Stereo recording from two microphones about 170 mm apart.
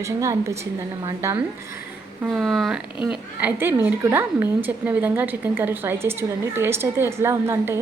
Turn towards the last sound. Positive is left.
turn(degrees=-15)  # may be behind; listen again after turning